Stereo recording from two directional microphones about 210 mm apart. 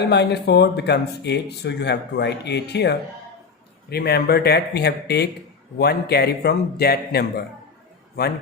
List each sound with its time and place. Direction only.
0.1 s speech: 55° left (ahead or behind)